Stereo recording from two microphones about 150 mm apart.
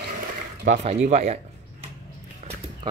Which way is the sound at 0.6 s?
50° right (ahead or behind).